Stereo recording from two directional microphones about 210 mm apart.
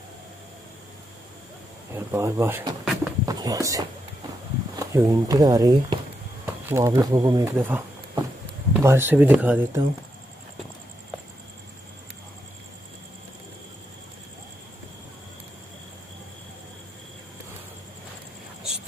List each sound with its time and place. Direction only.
2.0 s speech: 15° right (ahead or behind)
2.8 s a sound: centre (ahead or behind)
3.3 s speech: 15° right (ahead or behind)
4.9 s speech: 15° right (ahead or behind)